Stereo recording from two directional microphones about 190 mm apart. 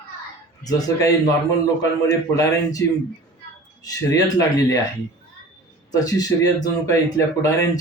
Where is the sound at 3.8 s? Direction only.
20° left (ahead or behind).